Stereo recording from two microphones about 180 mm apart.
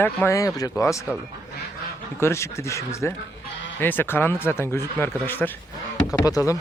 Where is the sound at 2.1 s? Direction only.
15° left (ahead or behind).